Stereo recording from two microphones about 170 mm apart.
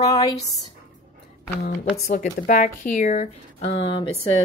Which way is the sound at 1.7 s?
55° left (ahead or behind).